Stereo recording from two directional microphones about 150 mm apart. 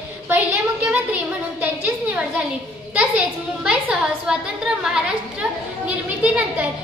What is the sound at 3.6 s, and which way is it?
Speech, 5° right (ahead or behind).